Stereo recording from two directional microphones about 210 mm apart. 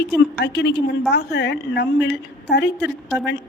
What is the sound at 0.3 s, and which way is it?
A woman's voice, 50° left (ahead or behind).